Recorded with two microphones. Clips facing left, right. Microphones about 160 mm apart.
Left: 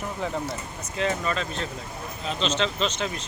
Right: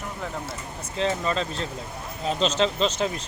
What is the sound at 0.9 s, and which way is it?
Speech, 30° right (ahead or behind).